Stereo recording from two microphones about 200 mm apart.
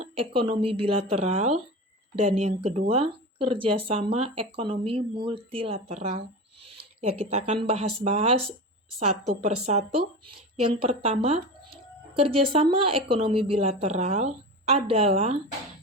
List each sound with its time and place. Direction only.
0.0 s a woman's voice: 30° right (ahead or behind)